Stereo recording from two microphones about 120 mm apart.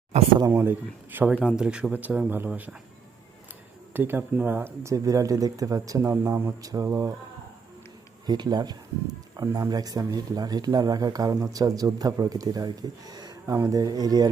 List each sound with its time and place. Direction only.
0.1 s speech: 70° right (ahead or behind)
0.5 s speech: 15° right (ahead or behind)
3.9 s speech: 15° right (ahead or behind)
8.3 s speech: 35° right (ahead or behind)